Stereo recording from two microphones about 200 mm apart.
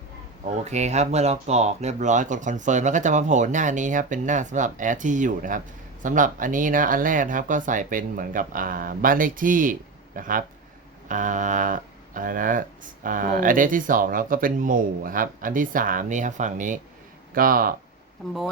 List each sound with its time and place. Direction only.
0.6 s speech: 35° right (ahead or behind)